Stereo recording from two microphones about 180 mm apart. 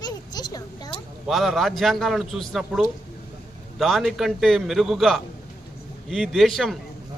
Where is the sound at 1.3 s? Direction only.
Centre (ahead or behind).